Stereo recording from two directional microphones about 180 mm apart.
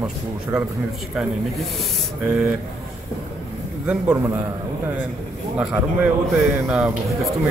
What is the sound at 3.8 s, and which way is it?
Speech, 5° right (ahead or behind).